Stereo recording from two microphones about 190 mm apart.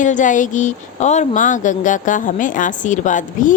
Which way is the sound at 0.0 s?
40° left (ahead or behind).